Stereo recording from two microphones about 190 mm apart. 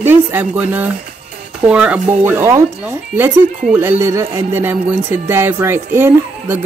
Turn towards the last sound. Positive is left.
turn(degrees=-10)  # may be behind; listen again after turning